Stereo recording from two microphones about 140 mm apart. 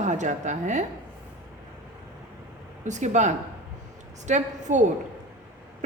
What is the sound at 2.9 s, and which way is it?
A woman's voice, 60° right (ahead or behind).